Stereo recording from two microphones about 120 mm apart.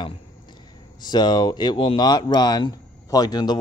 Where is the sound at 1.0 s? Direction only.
35° left (ahead or behind).